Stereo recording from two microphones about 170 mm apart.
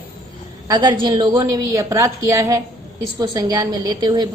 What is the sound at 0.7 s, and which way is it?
A woman's voice, 25° right (ahead or behind).